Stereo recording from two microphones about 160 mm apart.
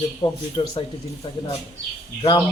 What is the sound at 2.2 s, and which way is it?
Speech, 25° left (ahead or behind).